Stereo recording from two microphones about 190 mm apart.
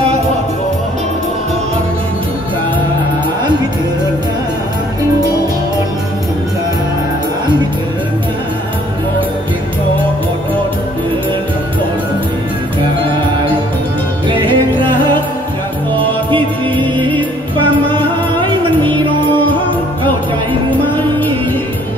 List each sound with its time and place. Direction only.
14.3 s music: 25° right (ahead or behind)
16.3 s music: 25° right (ahead or behind)